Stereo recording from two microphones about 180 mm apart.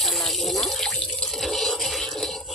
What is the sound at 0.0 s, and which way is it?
Water, centre (ahead or behind).